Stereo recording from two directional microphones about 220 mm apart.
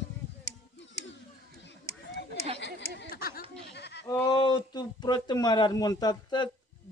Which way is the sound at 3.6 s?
50° left (ahead or behind).